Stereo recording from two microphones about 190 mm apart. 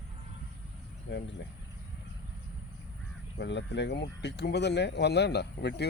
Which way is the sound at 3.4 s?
65° left (ahead or behind).